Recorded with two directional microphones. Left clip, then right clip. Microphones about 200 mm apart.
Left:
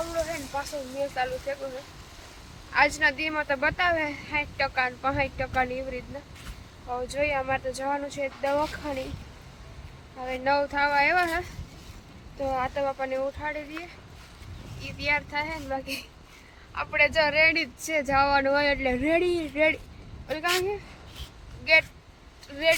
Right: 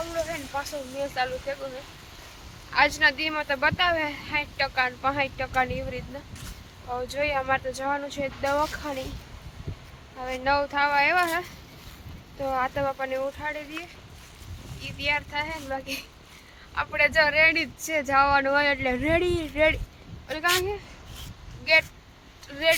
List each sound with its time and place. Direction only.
0.2 s a sound: 5° left (ahead or behind)
1.1 s speech: 5° left (ahead or behind)
2.7 s speech: 5° left (ahead or behind)
10.2 s speech: centre (ahead or behind)